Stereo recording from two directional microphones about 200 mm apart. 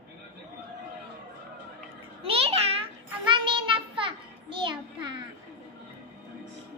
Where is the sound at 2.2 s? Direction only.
30° right (ahead or behind).